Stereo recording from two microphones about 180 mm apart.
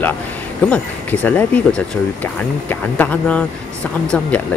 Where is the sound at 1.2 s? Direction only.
10° left (ahead or behind).